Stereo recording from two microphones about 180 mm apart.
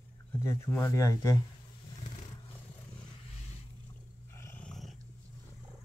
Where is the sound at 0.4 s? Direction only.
15° left (ahead or behind).